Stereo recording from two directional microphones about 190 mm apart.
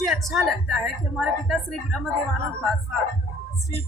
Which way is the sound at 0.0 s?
Centre (ahead or behind).